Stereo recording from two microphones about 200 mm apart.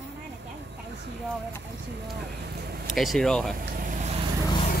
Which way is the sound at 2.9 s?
Centre (ahead or behind).